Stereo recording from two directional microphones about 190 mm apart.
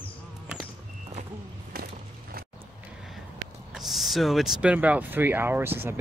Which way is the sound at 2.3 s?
50° right (ahead or behind).